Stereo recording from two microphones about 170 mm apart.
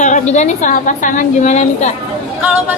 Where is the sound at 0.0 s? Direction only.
45° left (ahead or behind).